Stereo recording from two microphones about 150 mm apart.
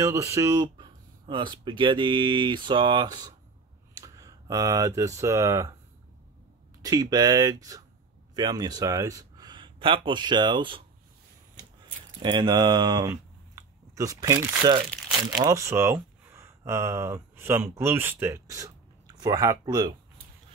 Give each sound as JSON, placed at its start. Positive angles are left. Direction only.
{"t": 0.0, "sound": "speech", "side_deg": -20}
{"t": 1.2, "sound": "speech", "side_deg": -30}
{"t": 6.8, "sound": "speech", "side_deg": -25}
{"t": 12.2, "sound": "speech", "side_deg": -30}
{"t": 14.6, "sound": "speech", "side_deg": -35}
{"t": 15.2, "sound": "speech", "side_deg": -25}